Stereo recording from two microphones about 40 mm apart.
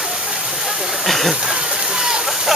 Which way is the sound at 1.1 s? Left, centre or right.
Centre.